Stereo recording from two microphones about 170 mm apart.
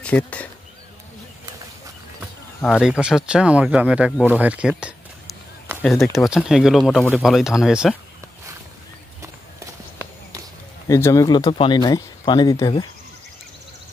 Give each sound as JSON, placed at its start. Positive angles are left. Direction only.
{"t": 0.0, "sound": "speech", "side_deg": 5}
{"t": 2.6, "sound": "speech", "side_deg": 5}
{"t": 10.9, "sound": "speech", "side_deg": 20}